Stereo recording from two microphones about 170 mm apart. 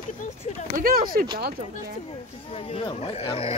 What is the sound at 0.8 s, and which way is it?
Speech, 55° right (ahead or behind).